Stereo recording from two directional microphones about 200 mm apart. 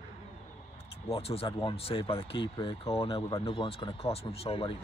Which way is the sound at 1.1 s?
30° left (ahead or behind).